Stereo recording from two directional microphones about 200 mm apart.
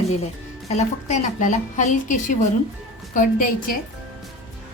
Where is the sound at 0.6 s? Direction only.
35° left (ahead or behind).